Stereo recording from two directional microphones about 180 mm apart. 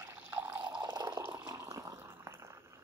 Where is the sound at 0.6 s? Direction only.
25° right (ahead or behind).